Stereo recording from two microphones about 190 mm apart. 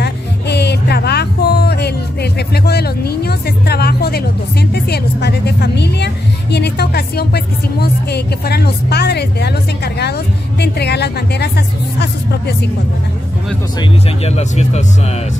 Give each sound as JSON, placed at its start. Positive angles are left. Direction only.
{"t": 0.0, "sound": "music", "side_deg": 60}
{"t": 13.7, "sound": "speech", "side_deg": 35}